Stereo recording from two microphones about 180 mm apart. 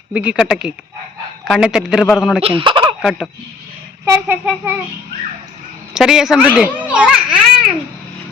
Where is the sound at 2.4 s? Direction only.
30° right (ahead or behind).